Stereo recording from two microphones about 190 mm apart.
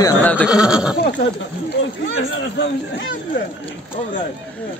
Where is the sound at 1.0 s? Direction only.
65° left (ahead or behind).